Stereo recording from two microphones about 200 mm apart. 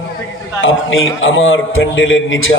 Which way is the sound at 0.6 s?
75° left (ahead or behind).